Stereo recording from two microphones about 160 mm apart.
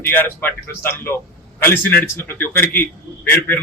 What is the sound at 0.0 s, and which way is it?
A man's voice, 10° left (ahead or behind).